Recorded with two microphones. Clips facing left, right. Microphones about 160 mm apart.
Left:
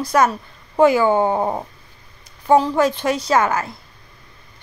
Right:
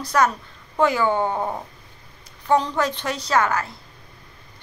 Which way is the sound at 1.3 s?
30° left (ahead or behind).